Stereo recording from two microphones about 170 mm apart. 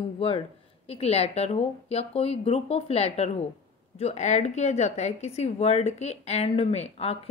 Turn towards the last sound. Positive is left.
turn(degrees=40)  # may be behind; listen again after turning